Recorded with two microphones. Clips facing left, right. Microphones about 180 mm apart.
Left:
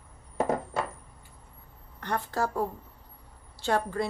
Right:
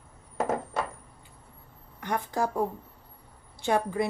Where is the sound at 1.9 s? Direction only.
10° right (ahead or behind).